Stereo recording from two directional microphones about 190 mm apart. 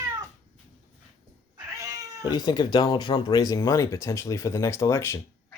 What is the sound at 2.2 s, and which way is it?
Speech, 20° left (ahead or behind).